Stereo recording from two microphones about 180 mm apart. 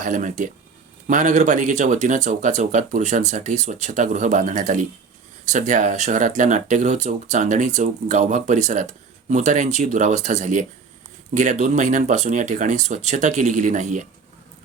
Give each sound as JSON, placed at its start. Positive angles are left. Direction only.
{"t": 0.0, "sound": "speech", "side_deg": -45}